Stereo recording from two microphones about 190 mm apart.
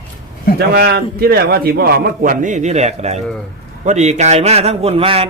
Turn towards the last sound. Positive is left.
turn(degrees=-30)  # may be behind; listen again after turning